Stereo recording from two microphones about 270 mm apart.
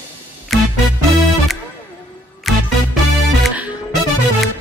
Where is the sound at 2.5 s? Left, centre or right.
Centre.